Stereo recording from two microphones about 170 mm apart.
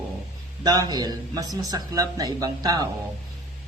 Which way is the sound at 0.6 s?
20° right (ahead or behind).